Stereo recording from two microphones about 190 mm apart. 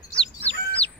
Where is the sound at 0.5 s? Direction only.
60° left (ahead or behind).